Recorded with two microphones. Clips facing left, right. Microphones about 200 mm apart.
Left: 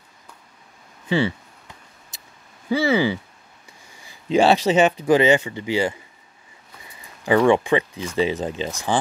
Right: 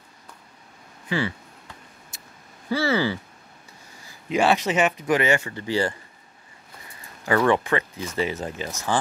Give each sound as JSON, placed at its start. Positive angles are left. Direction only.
{"t": 1.0, "sound": "speech", "side_deg": 25}
{"t": 2.7, "sound": "speech", "side_deg": 15}
{"t": 4.3, "sound": "speech", "side_deg": 30}
{"t": 7.2, "sound": "speech", "side_deg": 15}